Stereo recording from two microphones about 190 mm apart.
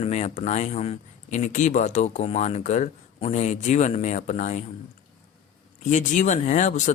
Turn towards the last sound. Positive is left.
turn(degrees=40)  # may be behind; listen again after turning